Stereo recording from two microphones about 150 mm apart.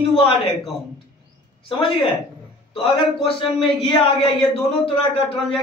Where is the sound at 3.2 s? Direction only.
Centre (ahead or behind).